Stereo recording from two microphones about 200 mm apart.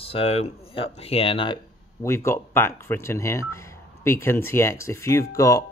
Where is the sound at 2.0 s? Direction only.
15° left (ahead or behind).